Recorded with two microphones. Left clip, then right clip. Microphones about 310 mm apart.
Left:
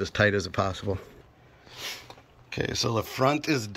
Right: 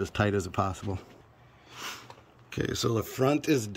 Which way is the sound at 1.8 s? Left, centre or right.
Centre.